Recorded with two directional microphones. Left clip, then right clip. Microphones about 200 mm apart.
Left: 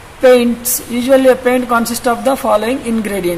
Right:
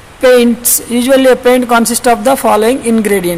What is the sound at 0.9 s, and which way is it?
A man's voice, 45° right (ahead or behind).